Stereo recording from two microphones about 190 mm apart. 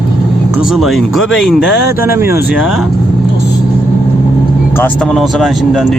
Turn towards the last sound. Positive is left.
turn(degrees=0)  # may be behind; listen again after turning